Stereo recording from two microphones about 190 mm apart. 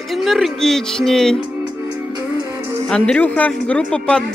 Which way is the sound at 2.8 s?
5° left (ahead or behind).